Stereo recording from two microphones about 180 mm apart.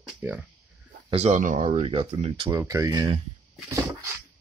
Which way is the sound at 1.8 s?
30° right (ahead or behind).